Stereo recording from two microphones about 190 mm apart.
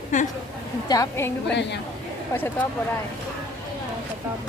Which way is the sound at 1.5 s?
65° left (ahead or behind).